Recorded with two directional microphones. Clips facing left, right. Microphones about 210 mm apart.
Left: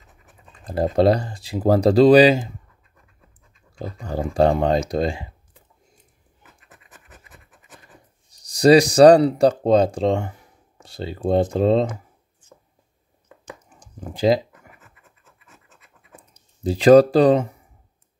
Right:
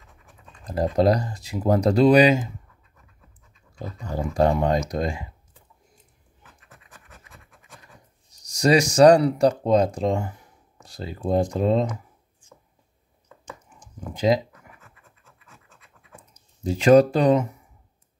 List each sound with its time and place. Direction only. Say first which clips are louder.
0.7 s speech: left 3 dB; 30° left (ahead or behind)
3.7 s speech: left 3 dB; 30° left (ahead or behind)
8.5 s speech: left 6 dB; 35° left (ahead or behind)
13.7 s a sound: left 4 dB; 30° left (ahead or behind)
16.6 s speech: left 3 dB; 35° left (ahead or behind)